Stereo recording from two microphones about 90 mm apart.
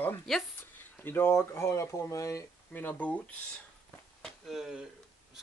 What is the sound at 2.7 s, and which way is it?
Speech, 20° left (ahead or behind).